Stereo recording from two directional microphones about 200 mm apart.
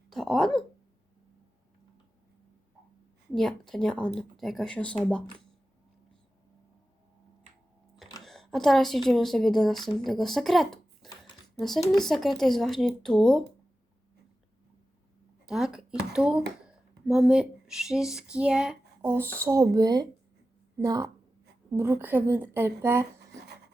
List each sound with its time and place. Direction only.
0.1 s a sound: centre (ahead or behind)
3.3 s speech: centre (ahead or behind)
8.2 s speech: centre (ahead or behind)
10.0 s a sound: centre (ahead or behind)
11.9 s speech: centre (ahead or behind)
15.4 s a woman's voice: 5° right (ahead or behind)